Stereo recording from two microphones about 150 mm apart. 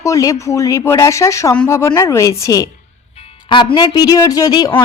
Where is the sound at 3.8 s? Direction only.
25° left (ahead or behind).